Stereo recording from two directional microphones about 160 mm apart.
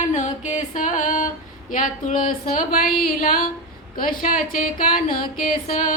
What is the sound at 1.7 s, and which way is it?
Music, 55° left (ahead or behind).